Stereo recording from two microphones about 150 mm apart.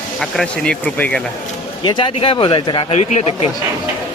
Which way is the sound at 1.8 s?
30° left (ahead or behind).